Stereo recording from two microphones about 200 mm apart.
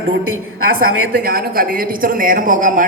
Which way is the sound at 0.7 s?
45° right (ahead or behind).